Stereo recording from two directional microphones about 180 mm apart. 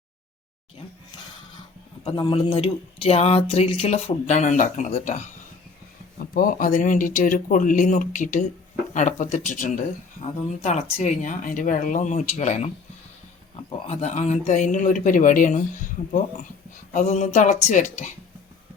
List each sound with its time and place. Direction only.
2.0 s speech: 25° left (ahead or behind)
6.3 s speech: 50° left (ahead or behind)